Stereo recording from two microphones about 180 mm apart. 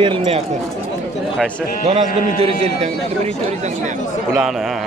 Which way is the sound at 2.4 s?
35° right (ahead or behind).